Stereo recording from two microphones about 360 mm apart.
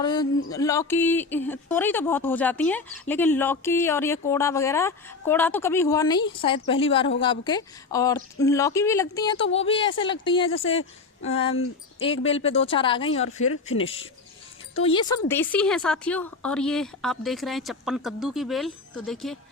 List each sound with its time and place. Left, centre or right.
0.0 s speech: centre
13.2 s speech: left
14.8 s a woman's voice: centre